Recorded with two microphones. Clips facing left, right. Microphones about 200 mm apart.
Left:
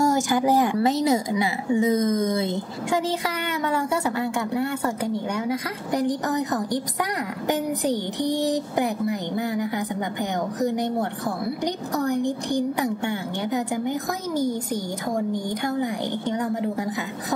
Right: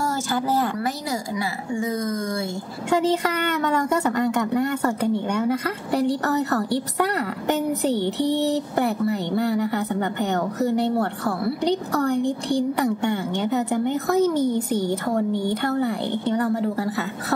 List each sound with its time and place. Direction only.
0.0 s a woman's voice: 15° left (ahead or behind)